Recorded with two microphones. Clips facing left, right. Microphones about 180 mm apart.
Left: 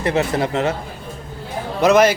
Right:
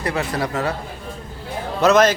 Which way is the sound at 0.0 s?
25° left (ahead or behind).